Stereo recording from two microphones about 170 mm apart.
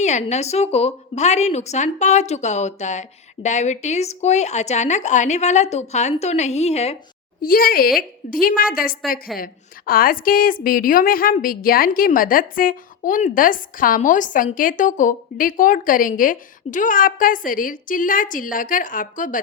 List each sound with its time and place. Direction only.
0.0 s a woman's voice: 40° left (ahead or behind)
7.4 s a woman's voice: 60° left (ahead or behind)